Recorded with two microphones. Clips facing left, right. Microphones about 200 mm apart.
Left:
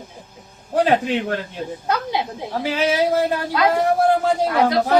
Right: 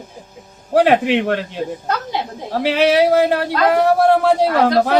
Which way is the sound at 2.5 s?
70° right (ahead or behind).